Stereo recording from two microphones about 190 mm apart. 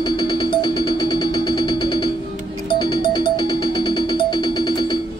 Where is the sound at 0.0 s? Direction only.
25° left (ahead or behind).